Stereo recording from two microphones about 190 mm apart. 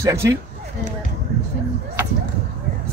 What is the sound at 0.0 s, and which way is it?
Speech, 15° right (ahead or behind).